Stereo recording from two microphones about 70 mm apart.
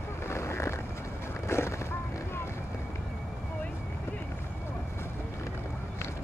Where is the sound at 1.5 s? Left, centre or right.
Left.